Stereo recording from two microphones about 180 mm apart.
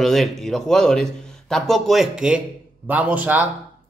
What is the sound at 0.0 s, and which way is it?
Speech, centre (ahead or behind).